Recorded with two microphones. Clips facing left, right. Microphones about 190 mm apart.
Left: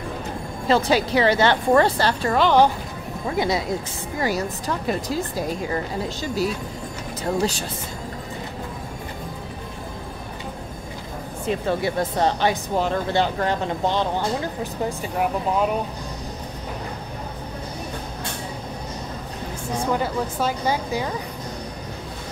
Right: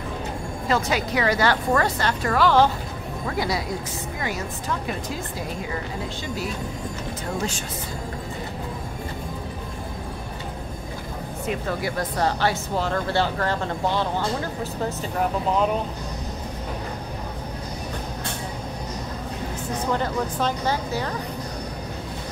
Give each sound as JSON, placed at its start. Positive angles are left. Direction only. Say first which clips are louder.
{"t": 0.7, "sound": "a woman's voice", "louder": "left 5 dB", "side_deg": 30}
{"t": 2.3, "sound": "a woman's voice", "louder": "left 1 dB", "side_deg": 20}
{"t": 7.3, "sound": "speech", "louder": "left 6 dB", "side_deg": 35}
{"t": 11.4, "sound": "speech", "louder": "left 4 dB", "side_deg": 25}
{"t": 19.9, "sound": "speech", "louder": "left 1 dB", "side_deg": 10}